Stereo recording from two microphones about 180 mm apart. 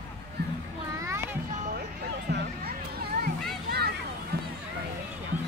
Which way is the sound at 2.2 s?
60° right (ahead or behind).